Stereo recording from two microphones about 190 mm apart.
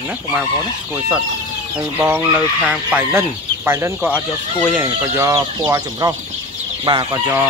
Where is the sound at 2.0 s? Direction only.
10° right (ahead or behind).